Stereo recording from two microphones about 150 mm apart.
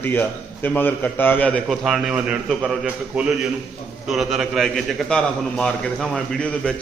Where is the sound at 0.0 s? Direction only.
15° left (ahead or behind).